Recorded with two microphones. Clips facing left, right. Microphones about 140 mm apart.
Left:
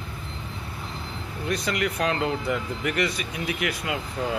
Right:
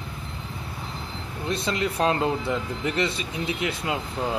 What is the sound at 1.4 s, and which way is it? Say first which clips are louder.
Speech: even; 25° right (ahead or behind).